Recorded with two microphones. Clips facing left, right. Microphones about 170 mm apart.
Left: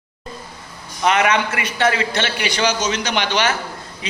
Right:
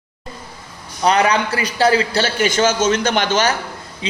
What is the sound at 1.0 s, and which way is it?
A man's voice, 35° right (ahead or behind).